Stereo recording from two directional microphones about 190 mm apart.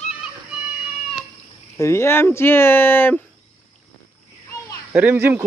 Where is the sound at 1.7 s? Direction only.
15° left (ahead or behind).